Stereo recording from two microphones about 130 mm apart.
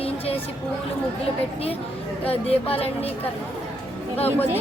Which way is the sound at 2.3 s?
50° left (ahead or behind).